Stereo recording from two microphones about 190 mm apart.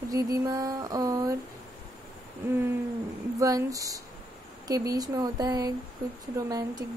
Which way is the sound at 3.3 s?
15° right (ahead or behind).